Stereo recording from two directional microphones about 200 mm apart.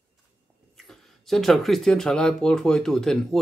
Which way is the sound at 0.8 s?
Centre (ahead or behind).